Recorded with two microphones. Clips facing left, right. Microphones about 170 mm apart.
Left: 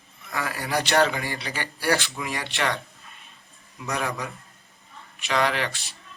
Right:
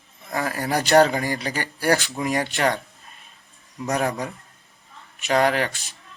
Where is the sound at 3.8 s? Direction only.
45° right (ahead or behind).